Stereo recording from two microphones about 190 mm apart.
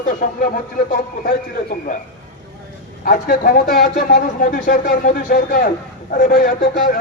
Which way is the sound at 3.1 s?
45° left (ahead or behind).